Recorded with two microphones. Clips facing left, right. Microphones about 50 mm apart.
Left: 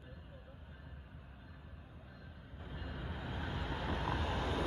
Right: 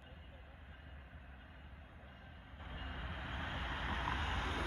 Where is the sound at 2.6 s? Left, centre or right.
Right.